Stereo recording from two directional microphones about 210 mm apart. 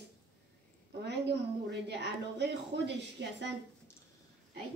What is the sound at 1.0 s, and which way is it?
A woman's voice, 55° right (ahead or behind).